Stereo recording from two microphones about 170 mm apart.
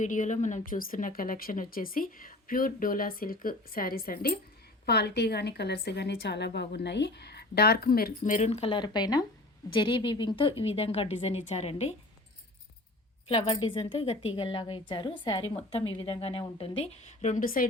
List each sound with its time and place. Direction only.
0.0 s a woman's voice: 45° left (ahead or behind)
4.9 s a woman's voice: 75° left (ahead or behind); by 11.9 s 40° left (ahead or behind)
13.2 s a woman's voice: 35° left (ahead or behind); by 17.7 s 55° left (ahead or behind)